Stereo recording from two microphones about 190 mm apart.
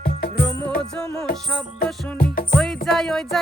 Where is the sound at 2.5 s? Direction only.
5° left (ahead or behind).